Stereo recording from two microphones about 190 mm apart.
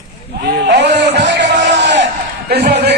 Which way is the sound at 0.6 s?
65° right (ahead or behind).